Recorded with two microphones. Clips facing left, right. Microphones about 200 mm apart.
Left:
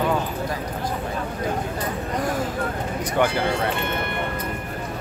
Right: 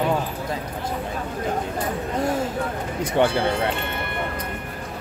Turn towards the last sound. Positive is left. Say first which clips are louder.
# right 2 dB
turn(degrees=-25)  # may be behind; listen again after turning